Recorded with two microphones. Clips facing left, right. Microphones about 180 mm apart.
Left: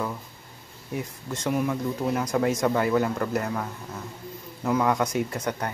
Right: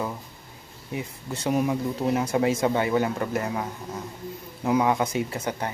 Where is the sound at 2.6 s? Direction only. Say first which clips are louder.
Even; 5° right (ahead or behind).